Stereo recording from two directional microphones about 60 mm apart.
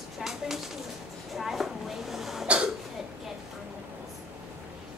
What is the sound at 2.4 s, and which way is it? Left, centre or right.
Cough, centre.